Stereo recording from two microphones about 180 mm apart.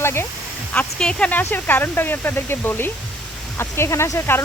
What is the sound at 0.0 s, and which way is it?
Speech, 15° left (ahead or behind).